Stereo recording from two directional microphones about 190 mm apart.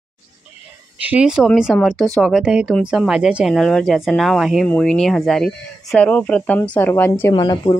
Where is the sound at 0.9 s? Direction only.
10° right (ahead or behind); by 7.3 s 10° left (ahead or behind).